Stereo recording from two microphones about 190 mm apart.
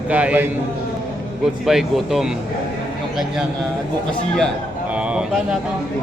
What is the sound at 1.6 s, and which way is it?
Speech, centre (ahead or behind).